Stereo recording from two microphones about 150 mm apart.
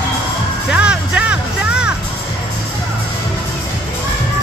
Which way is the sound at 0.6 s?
10° right (ahead or behind).